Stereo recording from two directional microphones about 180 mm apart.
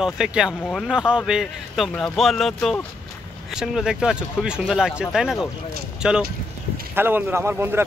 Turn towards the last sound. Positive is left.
turn(degrees=-10)  # may be behind; listen again after turning